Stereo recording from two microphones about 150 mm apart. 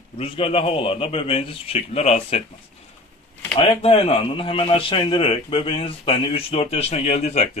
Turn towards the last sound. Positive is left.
turn(degrees=45)  # may be behind; listen again after turning